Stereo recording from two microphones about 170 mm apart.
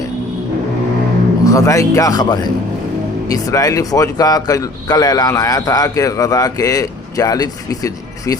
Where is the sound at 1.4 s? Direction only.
20° left (ahead or behind).